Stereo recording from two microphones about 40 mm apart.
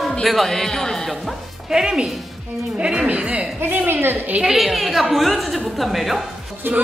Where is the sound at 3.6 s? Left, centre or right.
Right.